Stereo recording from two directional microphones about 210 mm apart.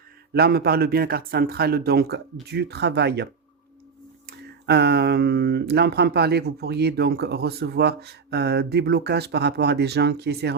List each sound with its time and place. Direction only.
0.3 s speech: 50° right (ahead or behind)
4.3 s speech: 50° right (ahead or behind)